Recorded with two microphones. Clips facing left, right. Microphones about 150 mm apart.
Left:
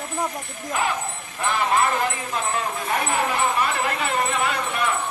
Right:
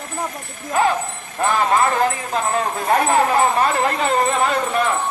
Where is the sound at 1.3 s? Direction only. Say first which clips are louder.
Right 6 dB; 45° right (ahead or behind).